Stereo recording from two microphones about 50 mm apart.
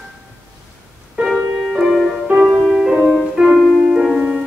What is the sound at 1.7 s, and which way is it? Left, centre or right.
Music, centre.